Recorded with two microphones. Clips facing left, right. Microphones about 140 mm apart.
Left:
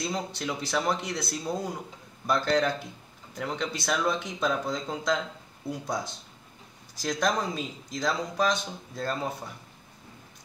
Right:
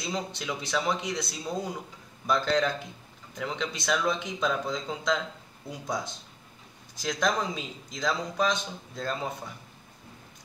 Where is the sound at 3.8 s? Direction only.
5° left (ahead or behind).